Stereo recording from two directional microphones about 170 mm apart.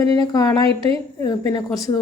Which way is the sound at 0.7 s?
30° right (ahead or behind).